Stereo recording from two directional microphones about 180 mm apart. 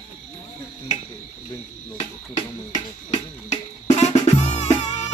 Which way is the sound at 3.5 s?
40° left (ahead or behind).